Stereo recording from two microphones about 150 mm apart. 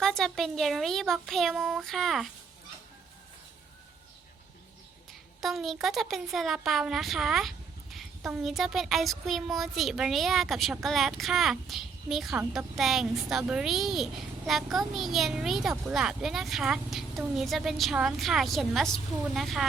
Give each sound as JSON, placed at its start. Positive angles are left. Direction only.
{"t": 0.0, "sound": "speech", "side_deg": 5}
{"t": 5.4, "sound": "speech", "side_deg": 0}